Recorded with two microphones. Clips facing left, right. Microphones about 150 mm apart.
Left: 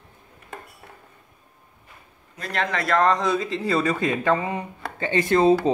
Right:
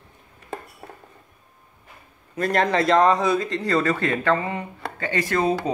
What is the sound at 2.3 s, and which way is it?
Speech, 45° right (ahead or behind).